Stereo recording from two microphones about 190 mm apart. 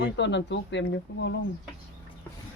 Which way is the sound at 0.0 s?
70° left (ahead or behind).